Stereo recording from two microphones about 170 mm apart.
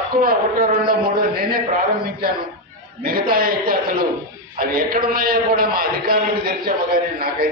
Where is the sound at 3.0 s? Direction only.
60° right (ahead or behind).